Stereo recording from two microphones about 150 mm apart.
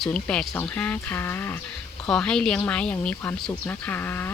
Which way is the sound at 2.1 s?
5° left (ahead or behind).